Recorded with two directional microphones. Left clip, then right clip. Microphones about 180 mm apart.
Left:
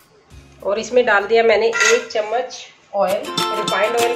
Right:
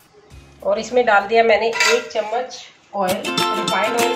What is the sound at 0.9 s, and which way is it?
Speech, 25° left (ahead or behind).